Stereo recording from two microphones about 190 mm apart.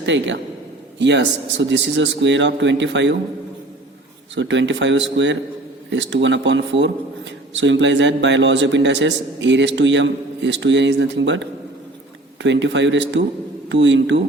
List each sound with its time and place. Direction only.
0.0 s a man's voice: 75° right (ahead or behind)
4.4 s a man's voice: 75° right (ahead or behind)